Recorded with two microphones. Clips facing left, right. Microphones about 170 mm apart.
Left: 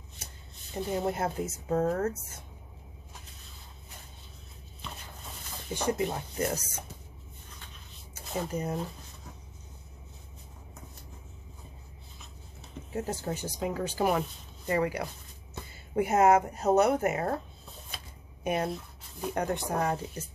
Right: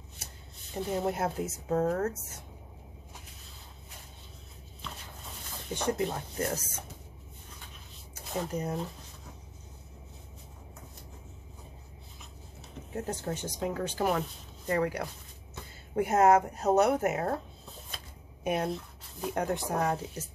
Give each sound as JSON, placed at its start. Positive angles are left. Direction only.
{"t": 0.7, "sound": "speech", "side_deg": 0}
{"t": 5.7, "sound": "speech", "side_deg": 5}
{"t": 8.1, "sound": "speech", "side_deg": 0}
{"t": 12.9, "sound": "speech", "side_deg": 5}
{"t": 17.9, "sound": "camera", "side_deg": 0}
{"t": 19.2, "sound": "speech", "side_deg": 0}